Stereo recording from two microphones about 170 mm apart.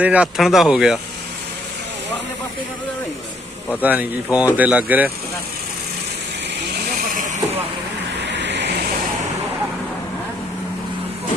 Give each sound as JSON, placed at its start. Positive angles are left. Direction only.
{"t": 0.0, "sound": "speech", "side_deg": -5}
{"t": 3.8, "sound": "speech", "side_deg": -10}
{"t": 8.2, "sound": "vehicle", "side_deg": -90}